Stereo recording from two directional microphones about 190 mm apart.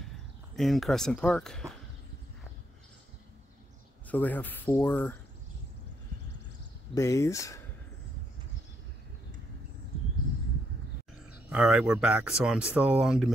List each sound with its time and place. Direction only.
0.6 s speech: centre (ahead or behind)
4.1 s speech: 10° left (ahead or behind)
7.0 s speech: 15° left (ahead or behind)
11.5 s speech: 5° right (ahead or behind)